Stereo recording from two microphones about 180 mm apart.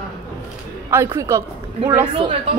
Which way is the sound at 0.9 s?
15° right (ahead or behind).